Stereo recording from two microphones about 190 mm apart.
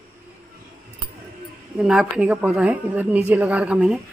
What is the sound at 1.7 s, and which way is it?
Speech, 5° right (ahead or behind).